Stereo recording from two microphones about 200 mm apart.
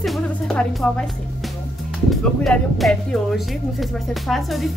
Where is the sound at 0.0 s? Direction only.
Centre (ahead or behind).